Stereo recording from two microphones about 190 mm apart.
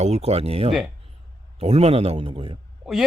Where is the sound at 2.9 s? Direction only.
Centre (ahead or behind).